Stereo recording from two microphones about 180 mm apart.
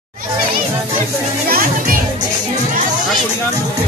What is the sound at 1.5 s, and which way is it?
Speech, 50° right (ahead or behind).